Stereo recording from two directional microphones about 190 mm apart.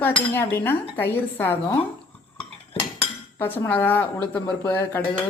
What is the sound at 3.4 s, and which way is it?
A woman's voice, 10° left (ahead or behind).